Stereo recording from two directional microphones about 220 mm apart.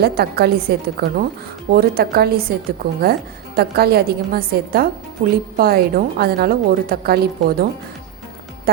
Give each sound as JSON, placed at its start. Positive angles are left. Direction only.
{"t": 0.0, "sound": "speech", "side_deg": -45}